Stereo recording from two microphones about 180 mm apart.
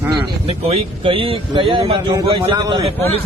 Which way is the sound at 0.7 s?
30° right (ahead or behind).